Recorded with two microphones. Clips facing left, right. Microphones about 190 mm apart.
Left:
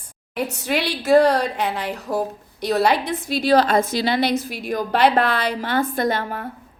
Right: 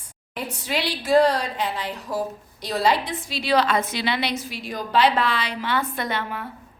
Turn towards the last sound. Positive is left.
turn(degrees=45)  # may be behind; listen again after turning